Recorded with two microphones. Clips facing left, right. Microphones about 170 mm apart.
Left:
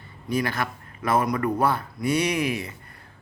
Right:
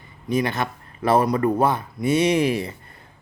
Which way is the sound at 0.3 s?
20° right (ahead or behind).